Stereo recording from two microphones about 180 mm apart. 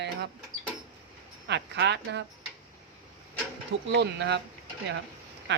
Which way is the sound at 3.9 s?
75° right (ahead or behind).